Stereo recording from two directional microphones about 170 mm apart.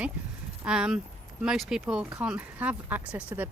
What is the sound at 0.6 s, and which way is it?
Speech, 5° right (ahead or behind).